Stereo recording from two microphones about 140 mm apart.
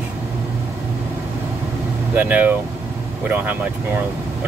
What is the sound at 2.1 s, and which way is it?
Speech, 10° right (ahead or behind).